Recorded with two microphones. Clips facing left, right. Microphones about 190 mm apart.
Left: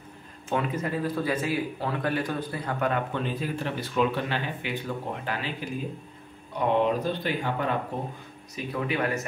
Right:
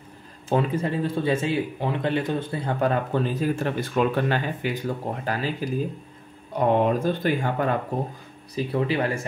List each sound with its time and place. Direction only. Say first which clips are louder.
0.5 s speech: right 5 dB; 30° right (ahead or behind); by 7.7 s 45° right (ahead or behind)
8.5 s speech: right 5 dB; 30° right (ahead or behind)